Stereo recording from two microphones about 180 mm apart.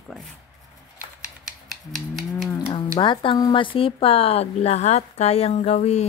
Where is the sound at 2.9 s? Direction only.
25° left (ahead or behind).